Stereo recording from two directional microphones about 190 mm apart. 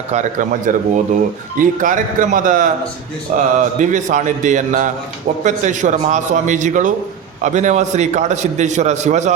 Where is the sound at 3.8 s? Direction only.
40° right (ahead or behind).